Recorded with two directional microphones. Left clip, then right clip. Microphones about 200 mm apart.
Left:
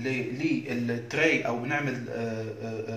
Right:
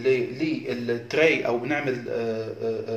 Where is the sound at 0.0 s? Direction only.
35° right (ahead or behind).